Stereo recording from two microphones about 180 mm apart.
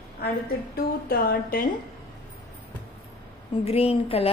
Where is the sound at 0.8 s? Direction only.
55° left (ahead or behind).